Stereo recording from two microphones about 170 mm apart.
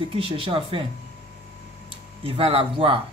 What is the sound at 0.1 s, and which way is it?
Speech, 35° right (ahead or behind).